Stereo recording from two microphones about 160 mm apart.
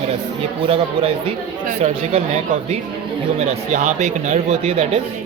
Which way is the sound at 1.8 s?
40° right (ahead or behind).